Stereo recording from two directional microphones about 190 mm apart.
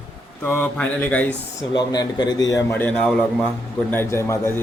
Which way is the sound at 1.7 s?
20° left (ahead or behind).